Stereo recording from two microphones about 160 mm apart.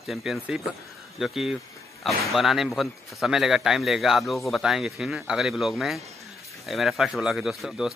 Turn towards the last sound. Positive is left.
turn(degrees=0)  # may be behind; listen again after turning